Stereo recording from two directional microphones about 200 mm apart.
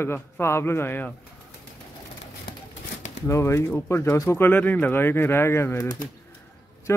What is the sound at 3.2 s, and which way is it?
Speech, 15° left (ahead or behind).